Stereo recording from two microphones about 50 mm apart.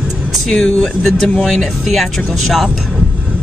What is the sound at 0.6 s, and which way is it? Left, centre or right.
Speech, centre.